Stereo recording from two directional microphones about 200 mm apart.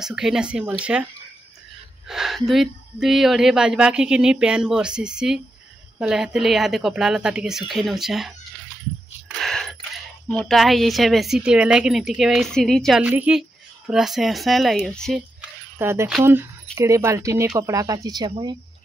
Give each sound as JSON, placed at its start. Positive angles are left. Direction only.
{"t": 0.0, "sound": "a woman's voice", "side_deg": -5}
{"t": 2.0, "sound": "a woman's voice", "side_deg": 0}
{"t": 9.4, "sound": "a sound", "side_deg": 0}
{"t": 10.2, "sound": "a woman's voice", "side_deg": 0}
{"t": 15.8, "sound": "speech", "side_deg": -15}